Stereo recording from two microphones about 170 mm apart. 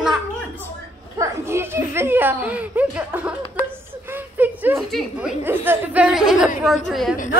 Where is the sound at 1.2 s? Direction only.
15° right (ahead or behind).